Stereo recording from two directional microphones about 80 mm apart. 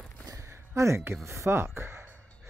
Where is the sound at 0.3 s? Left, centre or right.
Right.